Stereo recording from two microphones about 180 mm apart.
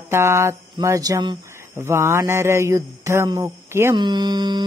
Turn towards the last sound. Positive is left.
turn(degrees=-25)  # may be behind; listen again after turning